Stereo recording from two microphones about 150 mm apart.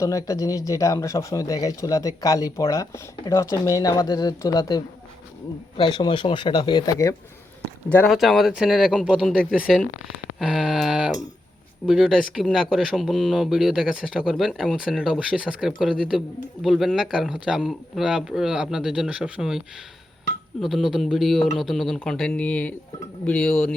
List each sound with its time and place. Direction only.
0.0 s speech: 25° left (ahead or behind)
7.9 s speech: 10° left (ahead or behind)
8.1 s speech: centre (ahead or behind)